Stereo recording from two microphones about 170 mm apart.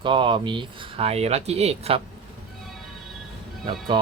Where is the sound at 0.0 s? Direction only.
30° right (ahead or behind).